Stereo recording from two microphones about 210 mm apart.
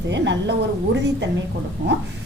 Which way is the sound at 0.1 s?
55° right (ahead or behind).